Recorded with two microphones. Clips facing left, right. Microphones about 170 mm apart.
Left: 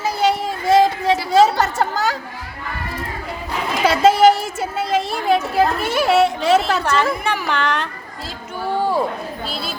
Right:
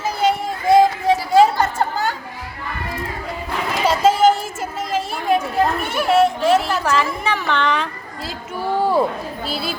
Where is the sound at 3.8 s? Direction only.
75° left (ahead or behind).